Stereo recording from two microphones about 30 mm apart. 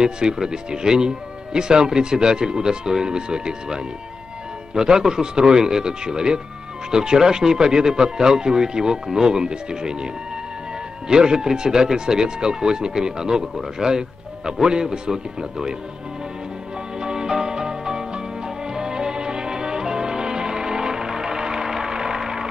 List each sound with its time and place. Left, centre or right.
0.0 s speech: right
11.1 s speech: right
17.0 s music: right